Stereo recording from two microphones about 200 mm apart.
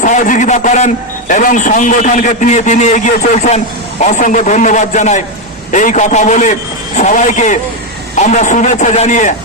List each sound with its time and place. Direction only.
0.0 s a man's voice: 40° left (ahead or behind)